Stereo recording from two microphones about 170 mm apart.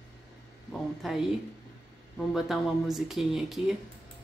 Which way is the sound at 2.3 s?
Centre (ahead or behind).